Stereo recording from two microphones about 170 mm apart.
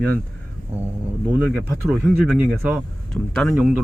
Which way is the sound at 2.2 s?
5° right (ahead or behind).